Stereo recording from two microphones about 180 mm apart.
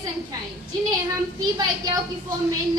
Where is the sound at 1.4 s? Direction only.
20° right (ahead or behind).